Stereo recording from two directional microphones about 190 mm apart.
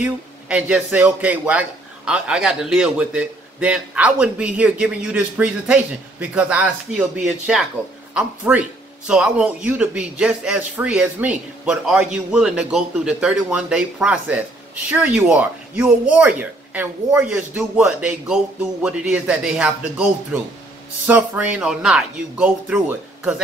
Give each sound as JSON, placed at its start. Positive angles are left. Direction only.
{"t": 0.0, "sound": "a man's voice", "side_deg": -5}
{"t": 21.1, "sound": "a man's voice", "side_deg": -5}